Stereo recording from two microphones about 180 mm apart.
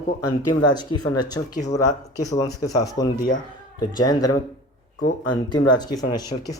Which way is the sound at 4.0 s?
20° left (ahead or behind).